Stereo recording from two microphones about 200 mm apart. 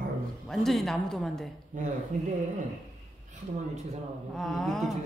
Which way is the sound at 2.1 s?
40° right (ahead or behind).